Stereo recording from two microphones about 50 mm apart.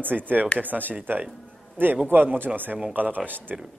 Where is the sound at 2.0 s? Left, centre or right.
Right.